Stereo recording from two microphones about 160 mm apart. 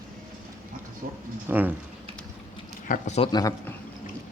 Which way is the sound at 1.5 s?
10° right (ahead or behind).